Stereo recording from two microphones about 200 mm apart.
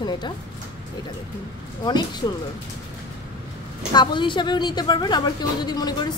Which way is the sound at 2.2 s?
15° left (ahead or behind).